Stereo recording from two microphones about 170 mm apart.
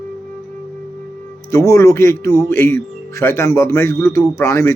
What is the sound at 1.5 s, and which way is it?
Speech, 20° left (ahead or behind).